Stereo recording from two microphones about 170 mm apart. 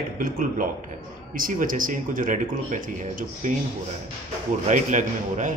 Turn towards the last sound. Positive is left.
turn(degrees=-50)  # may be behind; listen again after turning